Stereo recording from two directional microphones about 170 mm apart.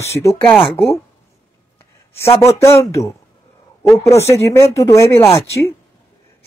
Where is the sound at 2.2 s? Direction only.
15° left (ahead or behind).